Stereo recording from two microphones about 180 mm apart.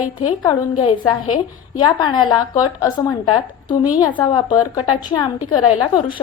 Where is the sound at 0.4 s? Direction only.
30° left (ahead or behind).